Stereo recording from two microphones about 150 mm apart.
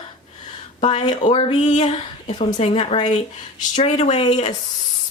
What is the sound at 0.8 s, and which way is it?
Speech, 45° left (ahead or behind).